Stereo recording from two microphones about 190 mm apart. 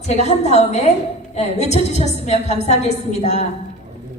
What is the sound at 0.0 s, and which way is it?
A woman's voice, 35° left (ahead or behind).